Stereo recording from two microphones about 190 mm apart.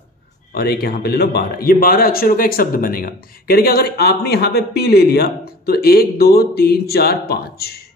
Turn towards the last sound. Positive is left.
turn(degrees=55)  # may be behind; listen again after turning